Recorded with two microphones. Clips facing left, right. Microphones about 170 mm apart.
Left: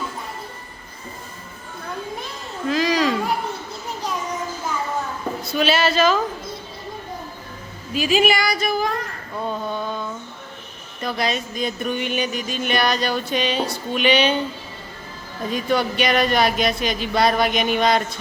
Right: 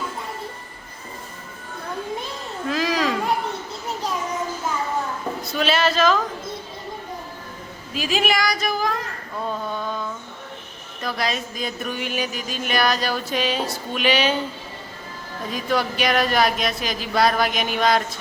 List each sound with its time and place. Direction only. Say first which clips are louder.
2.6 s a sound: left 3 dB; centre (ahead or behind)
5.5 s speech: left 2 dB; centre (ahead or behind)
7.9 s speech: left 4 dB; centre (ahead or behind)
9.5 s a sound: left 1 dB; 5° left (ahead or behind)
11.0 s speech: left 2 dB; centre (ahead or behind)
15.5 s speech: left 2 dB; centre (ahead or behind)